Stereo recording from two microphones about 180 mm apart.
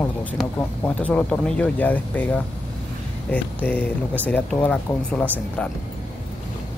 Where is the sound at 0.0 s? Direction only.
10° left (ahead or behind).